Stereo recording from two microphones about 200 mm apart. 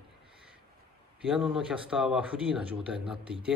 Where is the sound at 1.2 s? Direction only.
5° right (ahead or behind).